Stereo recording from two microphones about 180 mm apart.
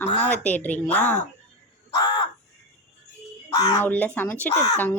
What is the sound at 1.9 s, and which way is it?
Crow, 25° left (ahead or behind).